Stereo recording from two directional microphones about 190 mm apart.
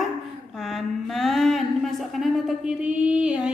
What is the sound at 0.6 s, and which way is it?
Speech, centre (ahead or behind).